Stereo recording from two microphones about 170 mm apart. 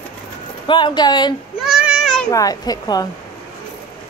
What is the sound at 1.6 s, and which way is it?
Child singing, 5° right (ahead or behind).